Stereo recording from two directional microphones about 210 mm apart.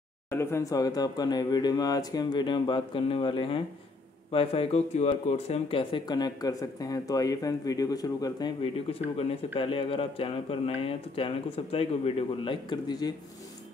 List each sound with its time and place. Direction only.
0.3 s speech: 10° left (ahead or behind)